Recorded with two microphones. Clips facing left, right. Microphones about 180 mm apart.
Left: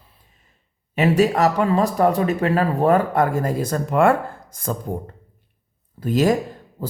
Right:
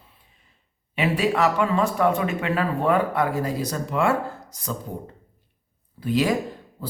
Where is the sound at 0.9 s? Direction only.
45° left (ahead or behind).